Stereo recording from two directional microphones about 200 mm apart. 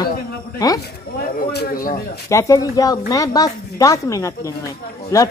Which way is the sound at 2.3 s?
15° left (ahead or behind).